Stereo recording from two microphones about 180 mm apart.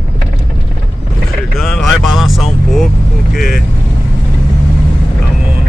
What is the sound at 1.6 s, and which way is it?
Vehicle, centre (ahead or behind).